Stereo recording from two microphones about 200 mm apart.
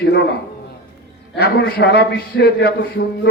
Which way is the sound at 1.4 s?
55° left (ahead or behind).